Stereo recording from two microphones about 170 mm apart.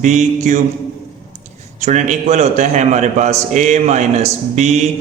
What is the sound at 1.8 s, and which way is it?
A man's voice, 40° right (ahead or behind).